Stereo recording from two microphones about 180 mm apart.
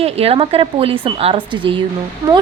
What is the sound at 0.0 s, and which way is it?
A woman's voice, 35° right (ahead or behind).